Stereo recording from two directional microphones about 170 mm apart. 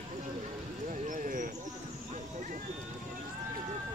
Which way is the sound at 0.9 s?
50° right (ahead or behind).